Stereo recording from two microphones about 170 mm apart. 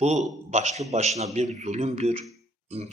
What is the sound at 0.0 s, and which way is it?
A man's voice, 40° right (ahead or behind).